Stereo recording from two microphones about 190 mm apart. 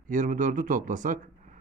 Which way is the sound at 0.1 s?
45° right (ahead or behind).